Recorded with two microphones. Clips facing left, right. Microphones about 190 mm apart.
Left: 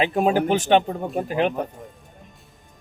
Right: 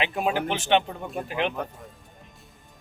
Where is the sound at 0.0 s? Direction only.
40° left (ahead or behind).